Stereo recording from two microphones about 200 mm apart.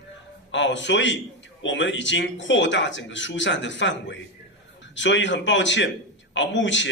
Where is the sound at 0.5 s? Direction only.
65° left (ahead or behind).